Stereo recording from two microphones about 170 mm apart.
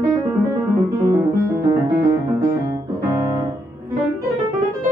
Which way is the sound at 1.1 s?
20° right (ahead or behind).